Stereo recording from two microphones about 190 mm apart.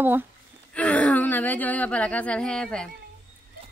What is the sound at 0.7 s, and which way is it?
Speech, 5° left (ahead or behind).